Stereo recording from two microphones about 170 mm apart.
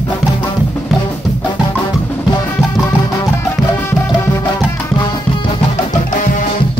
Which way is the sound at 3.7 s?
15° left (ahead or behind).